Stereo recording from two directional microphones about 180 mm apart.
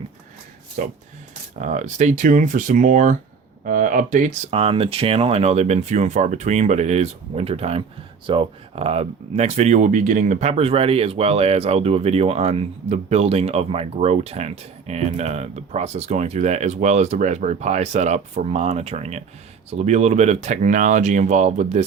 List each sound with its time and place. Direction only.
0.8 s speech: 45° right (ahead or behind)